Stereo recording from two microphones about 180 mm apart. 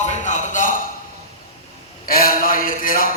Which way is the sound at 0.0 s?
45° left (ahead or behind).